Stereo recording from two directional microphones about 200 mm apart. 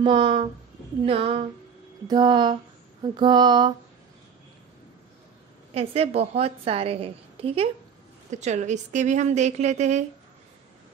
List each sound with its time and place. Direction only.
0.0 s a woman's voice: 25° right (ahead or behind)
5.8 s a woman's voice: 30° right (ahead or behind)